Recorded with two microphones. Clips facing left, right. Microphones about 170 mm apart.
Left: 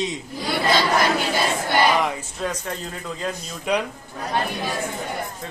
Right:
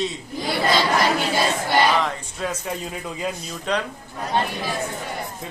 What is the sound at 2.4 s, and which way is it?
Speech, centre (ahead or behind).